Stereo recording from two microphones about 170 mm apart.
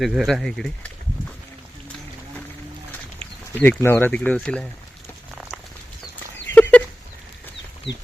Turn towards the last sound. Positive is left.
turn(degrees=10)  # may be behind; listen again after turning